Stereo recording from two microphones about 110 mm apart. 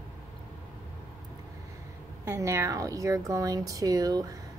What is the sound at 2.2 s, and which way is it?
Speech, 25° right (ahead or behind).